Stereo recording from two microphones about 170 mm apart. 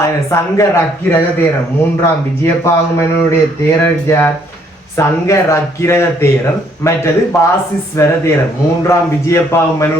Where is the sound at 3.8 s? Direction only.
15° left (ahead or behind).